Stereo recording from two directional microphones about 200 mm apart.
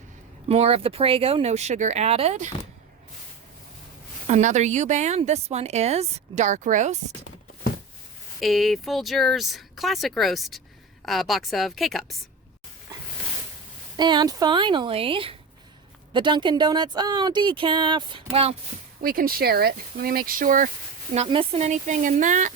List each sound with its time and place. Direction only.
0.4 s speech: 30° right (ahead or behind)
4.3 s speech: 35° right (ahead or behind)
8.4 s speech: centre (ahead or behind)
13.9 s speech: 20° right (ahead or behind)
19.0 s speech: 45° right (ahead or behind)
21.2 s speech: 30° right (ahead or behind)